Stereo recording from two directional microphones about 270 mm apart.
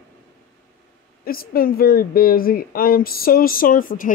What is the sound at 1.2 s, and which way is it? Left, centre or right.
Speech, left.